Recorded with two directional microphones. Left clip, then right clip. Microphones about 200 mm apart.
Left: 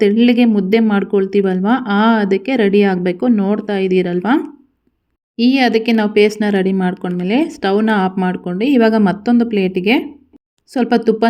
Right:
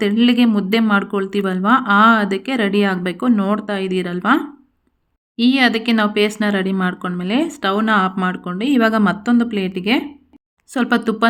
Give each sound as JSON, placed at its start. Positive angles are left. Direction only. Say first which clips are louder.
{"t": 0.0, "sound": "speech", "louder": "left 4 dB", "side_deg": 15}
{"t": 10.7, "sound": "speech", "louder": "left 4 dB", "side_deg": 10}